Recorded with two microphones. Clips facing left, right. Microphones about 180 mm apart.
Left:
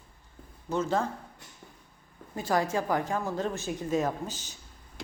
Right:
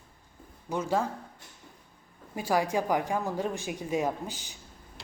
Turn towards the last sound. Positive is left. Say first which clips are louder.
# even
turn(degrees=-15)  # may be behind; listen again after turning